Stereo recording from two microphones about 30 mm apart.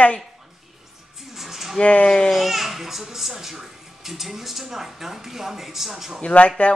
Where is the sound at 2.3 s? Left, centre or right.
Centre.